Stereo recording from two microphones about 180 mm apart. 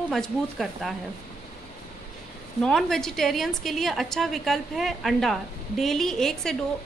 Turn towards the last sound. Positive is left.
turn(degrees=0)  # may be behind; listen again after turning